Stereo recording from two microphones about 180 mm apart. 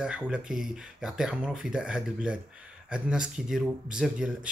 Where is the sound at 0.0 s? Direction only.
5° right (ahead or behind).